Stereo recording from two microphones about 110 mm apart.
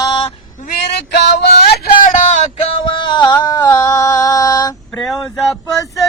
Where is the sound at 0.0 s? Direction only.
40° left (ahead or behind).